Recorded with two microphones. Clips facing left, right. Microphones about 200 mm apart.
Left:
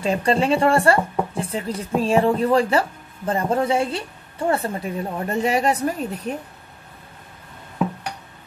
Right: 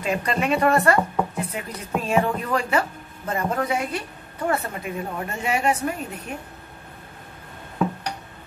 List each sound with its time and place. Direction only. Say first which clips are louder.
0.0 s speech: left 4 dB; 30° left (ahead or behind)